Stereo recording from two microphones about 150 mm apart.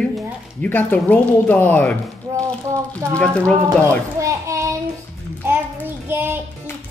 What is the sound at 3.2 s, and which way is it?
Speech, 5° left (ahead or behind).